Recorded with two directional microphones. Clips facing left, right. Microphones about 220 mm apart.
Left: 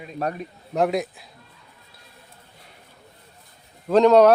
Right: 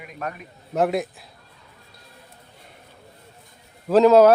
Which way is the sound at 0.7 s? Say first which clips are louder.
Even; centre (ahead or behind).